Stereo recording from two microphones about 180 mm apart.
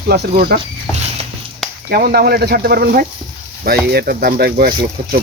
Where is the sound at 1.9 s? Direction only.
60° right (ahead or behind).